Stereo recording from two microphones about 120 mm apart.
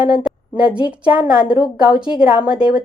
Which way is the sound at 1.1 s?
45° left (ahead or behind).